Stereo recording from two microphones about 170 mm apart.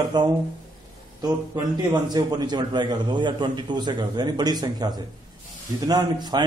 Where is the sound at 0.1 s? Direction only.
25° right (ahead or behind).